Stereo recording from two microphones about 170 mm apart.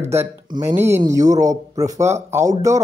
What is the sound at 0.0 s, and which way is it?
Speech, 15° right (ahead or behind).